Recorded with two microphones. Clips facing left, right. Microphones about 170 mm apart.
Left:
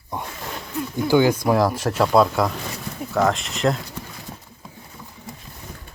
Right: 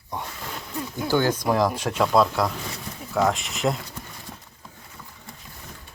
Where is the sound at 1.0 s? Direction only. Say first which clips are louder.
Left 5 dB; 10° left (ahead or behind).